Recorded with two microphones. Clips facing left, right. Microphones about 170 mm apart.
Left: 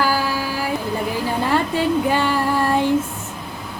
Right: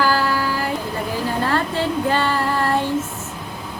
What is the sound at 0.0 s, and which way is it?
Child singing, 10° left (ahead or behind).